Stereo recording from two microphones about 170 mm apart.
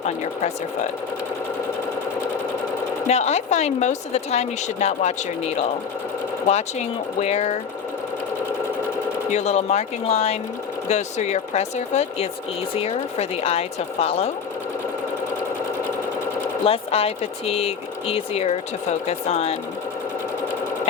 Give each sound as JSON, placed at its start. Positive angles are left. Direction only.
{"t": 3.1, "sound": "a woman's voice", "side_deg": 40}
{"t": 9.3, "sound": "a woman's voice", "side_deg": 40}
{"t": 16.6, "sound": "a woman's voice", "side_deg": 35}